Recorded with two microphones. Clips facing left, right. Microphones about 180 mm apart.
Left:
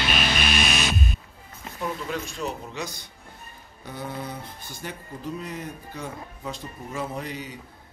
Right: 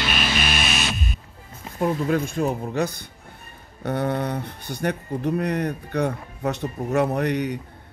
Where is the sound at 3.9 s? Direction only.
70° right (ahead or behind).